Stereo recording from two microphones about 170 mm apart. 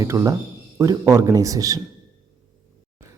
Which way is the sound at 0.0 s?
20° right (ahead or behind).